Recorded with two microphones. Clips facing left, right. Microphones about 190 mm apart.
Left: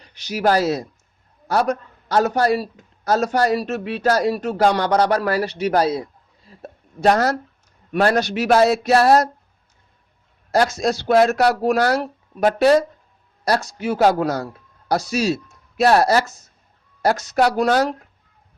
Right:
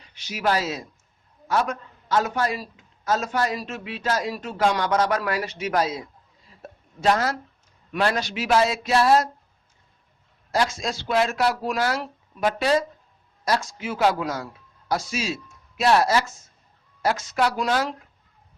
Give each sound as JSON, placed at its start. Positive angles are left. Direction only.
{"t": 0.0, "sound": "a man's voice", "side_deg": 40}
{"t": 8.1, "sound": "a man's voice", "side_deg": 65}
{"t": 10.5, "sound": "speech", "side_deg": 40}